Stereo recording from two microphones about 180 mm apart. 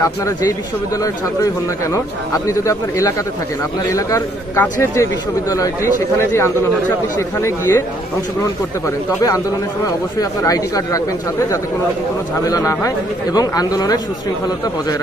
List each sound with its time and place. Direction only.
0.0 s speech: 20° left (ahead or behind)
2.3 s speech: 15° left (ahead or behind)
6.1 s speech: 15° left (ahead or behind)
10.4 s speech: 20° left (ahead or behind)